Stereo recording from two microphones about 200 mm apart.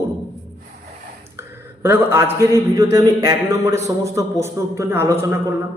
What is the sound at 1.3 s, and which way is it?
A man's voice, 10° right (ahead or behind).